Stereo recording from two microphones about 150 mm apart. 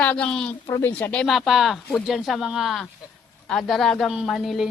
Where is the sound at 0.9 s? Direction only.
10° left (ahead or behind).